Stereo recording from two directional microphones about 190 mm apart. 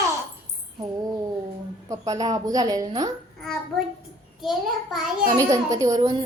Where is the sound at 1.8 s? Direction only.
15° right (ahead or behind).